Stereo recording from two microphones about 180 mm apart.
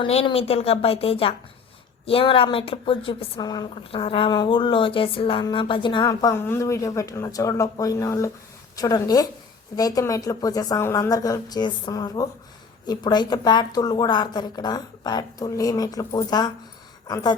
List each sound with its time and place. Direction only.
0.0 s a woman's voice: 30° left (ahead or behind)